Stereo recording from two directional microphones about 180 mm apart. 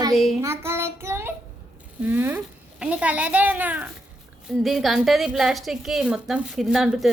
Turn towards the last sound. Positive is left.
turn(degrees=-5)  # may be behind; listen again after turning